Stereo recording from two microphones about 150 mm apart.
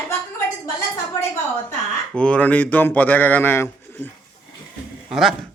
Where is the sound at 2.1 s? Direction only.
10° left (ahead or behind).